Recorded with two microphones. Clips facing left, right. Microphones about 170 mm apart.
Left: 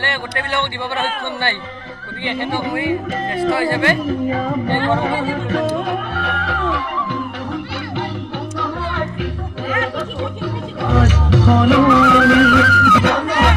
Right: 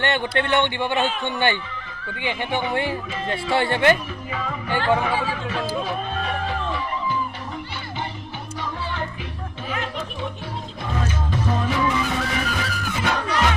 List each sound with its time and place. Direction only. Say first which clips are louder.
0.0 s a man's voice: right 2 dB; 20° right (ahead or behind)
4.3 s speech: left 9 dB; 40° left (ahead or behind)
5.8 s music: left 5 dB; 65° left (ahead or behind)
8.5 s music: left 5 dB; 75° left (ahead or behind)